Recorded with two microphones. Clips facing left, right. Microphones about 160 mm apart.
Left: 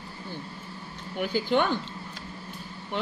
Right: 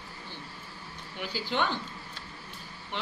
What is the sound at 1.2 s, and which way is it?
Speech, 50° left (ahead or behind).